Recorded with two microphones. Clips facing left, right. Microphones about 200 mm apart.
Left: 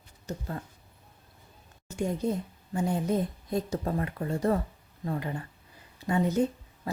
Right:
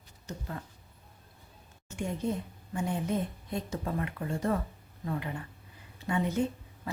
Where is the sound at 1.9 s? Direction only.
40° left (ahead or behind).